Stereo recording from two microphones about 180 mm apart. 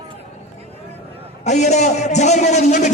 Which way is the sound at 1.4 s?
40° left (ahead or behind).